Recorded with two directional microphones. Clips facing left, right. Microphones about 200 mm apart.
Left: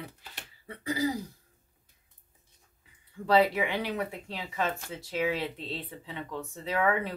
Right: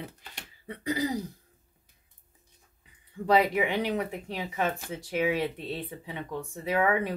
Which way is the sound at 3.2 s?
15° right (ahead or behind).